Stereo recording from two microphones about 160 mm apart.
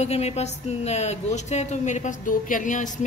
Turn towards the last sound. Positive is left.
turn(degrees=50)  # may be behind; listen again after turning